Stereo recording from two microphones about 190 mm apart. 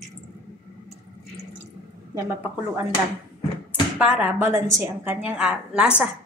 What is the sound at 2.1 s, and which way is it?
Speech, 15° right (ahead or behind).